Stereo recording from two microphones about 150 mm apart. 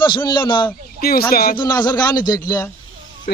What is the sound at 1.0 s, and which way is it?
Speech, 85° left.